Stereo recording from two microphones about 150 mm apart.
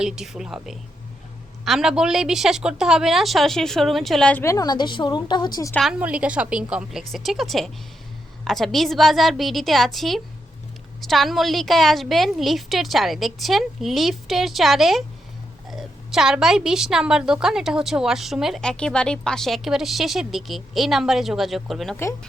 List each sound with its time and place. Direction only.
0.0 s a woman's voice: 5° right (ahead or behind)
4.4 s a woman's voice: 25° left (ahead or behind)
5.7 s a woman's voice: 5° right (ahead or behind)